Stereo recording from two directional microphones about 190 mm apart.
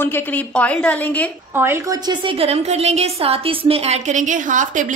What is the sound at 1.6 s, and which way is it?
A woman's voice, 15° right (ahead or behind).